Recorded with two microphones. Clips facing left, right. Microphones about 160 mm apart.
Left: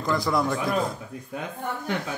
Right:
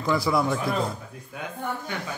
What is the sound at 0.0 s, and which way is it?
Speech, centre (ahead or behind).